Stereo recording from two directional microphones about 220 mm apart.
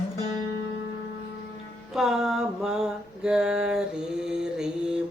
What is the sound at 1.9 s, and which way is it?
Mantra, centre (ahead or behind).